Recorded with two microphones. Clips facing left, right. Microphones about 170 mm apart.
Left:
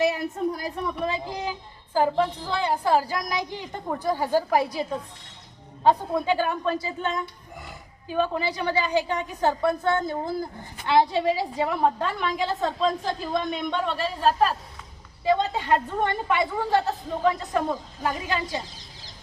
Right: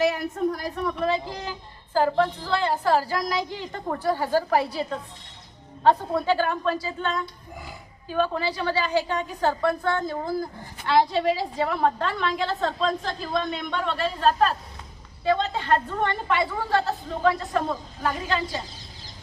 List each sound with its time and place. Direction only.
0.9 s a woman's voice: 10° left (ahead or behind)